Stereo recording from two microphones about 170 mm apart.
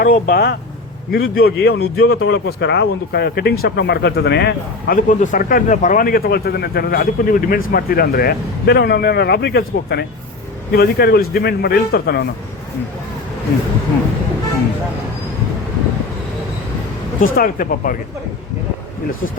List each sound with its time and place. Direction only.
0.0 s speech: 60° left (ahead or behind)
17.2 s speech: 55° left (ahead or behind)